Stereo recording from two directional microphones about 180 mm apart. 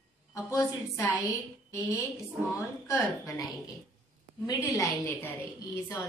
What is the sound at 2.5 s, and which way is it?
A woman's voice, 15° left (ahead or behind).